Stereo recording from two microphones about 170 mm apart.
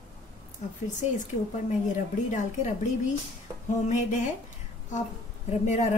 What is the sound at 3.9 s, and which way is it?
Speech, 45° left (ahead or behind).